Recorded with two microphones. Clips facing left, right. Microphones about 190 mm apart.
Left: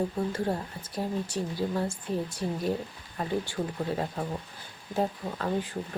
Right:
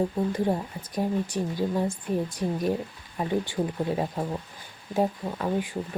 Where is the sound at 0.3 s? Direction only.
15° right (ahead or behind).